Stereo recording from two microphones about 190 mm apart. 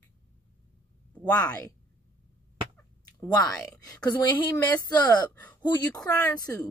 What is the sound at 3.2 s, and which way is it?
Speech, 20° left (ahead or behind).